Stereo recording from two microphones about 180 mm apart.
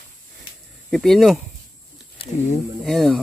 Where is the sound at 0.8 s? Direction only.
Centre (ahead or behind).